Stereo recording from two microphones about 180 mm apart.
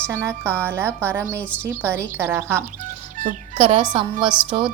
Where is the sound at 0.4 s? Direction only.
5° left (ahead or behind).